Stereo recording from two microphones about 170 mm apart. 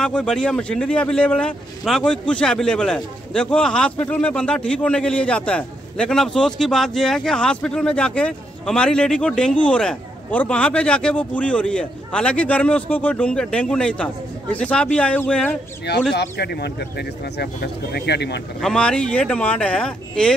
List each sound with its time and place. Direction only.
0.0 s a man's voice: 5° left (ahead or behind)
16.1 s speech: 75° left (ahead or behind)
18.6 s a man's voice: 5° left (ahead or behind)